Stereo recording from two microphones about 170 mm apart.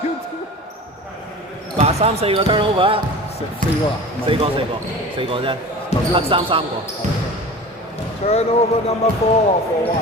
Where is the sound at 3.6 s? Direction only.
50° right (ahead or behind).